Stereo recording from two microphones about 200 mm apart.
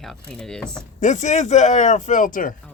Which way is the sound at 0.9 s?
35° left (ahead or behind).